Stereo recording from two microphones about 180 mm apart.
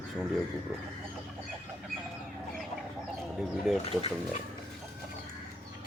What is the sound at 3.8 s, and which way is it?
Speech, 30° left (ahead or behind).